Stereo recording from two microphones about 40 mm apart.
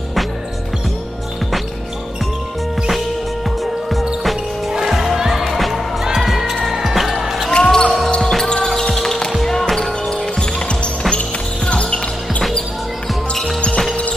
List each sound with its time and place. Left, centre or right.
4.2 s music: centre
6.2 s basketball bounce: centre
7.5 s basketball bounce: left
8.2 s basketball bounce: centre
10.0 s basketball bounce: left